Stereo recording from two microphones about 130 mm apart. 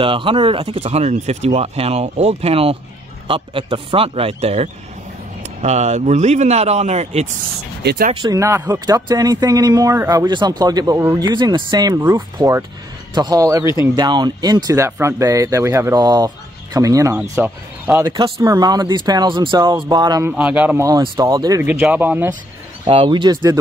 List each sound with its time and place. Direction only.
0.0 s speech: 40° right (ahead or behind); by 7.2 s 55° right (ahead or behind)
8.1 s speech: 35° right (ahead or behind)
8.4 s speech: 25° right (ahead or behind)
11.2 s speech: 35° right (ahead or behind)
12.4 s speech: 25° right (ahead or behind)
18.0 s speech: 35° right (ahead or behind)
20.2 s speech: 10° right (ahead or behind)
21.0 s speech: 30° right (ahead or behind)
21.6 s speech: 15° right (ahead or behind)
22.8 s speech: 40° right (ahead or behind)